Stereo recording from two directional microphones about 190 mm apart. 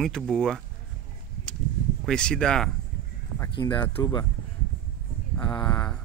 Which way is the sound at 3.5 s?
25° left (ahead or behind).